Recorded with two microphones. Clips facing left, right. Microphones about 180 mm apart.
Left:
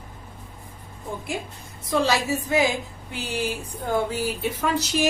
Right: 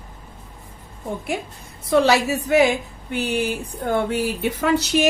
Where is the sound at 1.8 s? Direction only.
70° right (ahead or behind).